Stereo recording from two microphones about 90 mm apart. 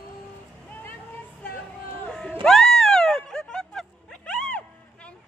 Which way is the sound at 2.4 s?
5° left (ahead or behind).